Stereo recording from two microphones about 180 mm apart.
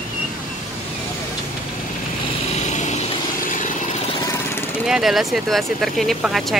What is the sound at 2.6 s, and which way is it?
Vehicle, 40° left (ahead or behind).